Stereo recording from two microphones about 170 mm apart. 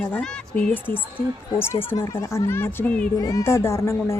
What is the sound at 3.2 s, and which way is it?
Speech, 20° left (ahead or behind).